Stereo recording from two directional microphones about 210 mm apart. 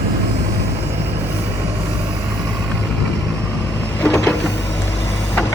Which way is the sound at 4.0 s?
10° left (ahead or behind).